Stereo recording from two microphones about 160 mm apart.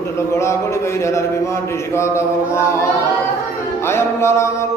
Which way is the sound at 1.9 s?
15° left (ahead or behind).